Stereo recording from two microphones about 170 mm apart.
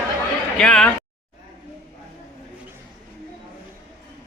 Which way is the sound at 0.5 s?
5° left (ahead or behind).